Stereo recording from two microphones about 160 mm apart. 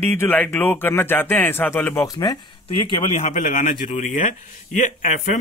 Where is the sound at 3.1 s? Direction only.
45° left (ahead or behind).